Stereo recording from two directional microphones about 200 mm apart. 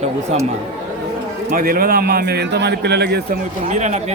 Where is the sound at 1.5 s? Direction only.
45° right (ahead or behind).